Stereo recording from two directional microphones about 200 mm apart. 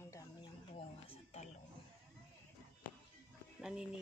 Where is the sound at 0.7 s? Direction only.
30° left (ahead or behind).